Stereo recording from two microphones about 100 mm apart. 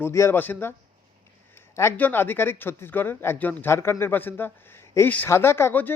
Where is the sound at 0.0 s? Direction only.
25° left (ahead or behind).